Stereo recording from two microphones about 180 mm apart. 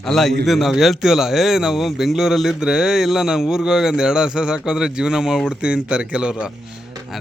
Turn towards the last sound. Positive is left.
turn(degrees=-5)  # may be behind; listen again after turning